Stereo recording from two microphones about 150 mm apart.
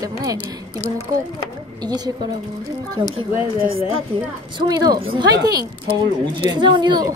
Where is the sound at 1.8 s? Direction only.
25° right (ahead or behind).